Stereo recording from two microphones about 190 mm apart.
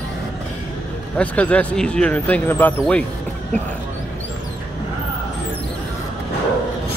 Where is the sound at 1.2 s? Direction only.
5° left (ahead or behind).